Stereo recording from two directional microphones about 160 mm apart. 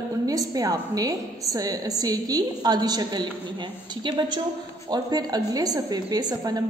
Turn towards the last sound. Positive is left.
turn(degrees=-25)  # may be behind; listen again after turning